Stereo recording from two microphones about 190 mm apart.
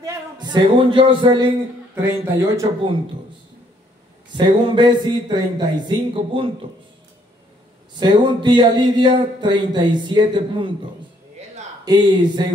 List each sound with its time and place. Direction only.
0.0 s speech: 20° right (ahead or behind)
2.0 s speech: 10° right (ahead or behind)
4.3 s speech: 25° right (ahead or behind)
7.9 s speech: 25° right (ahead or behind)
11.8 s speech: 20° right (ahead or behind)